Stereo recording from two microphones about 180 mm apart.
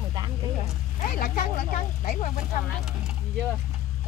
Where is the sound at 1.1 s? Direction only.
55° left (ahead or behind).